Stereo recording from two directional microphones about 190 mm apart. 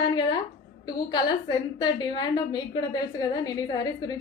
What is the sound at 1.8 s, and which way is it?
A woman's voice, 20° left (ahead or behind).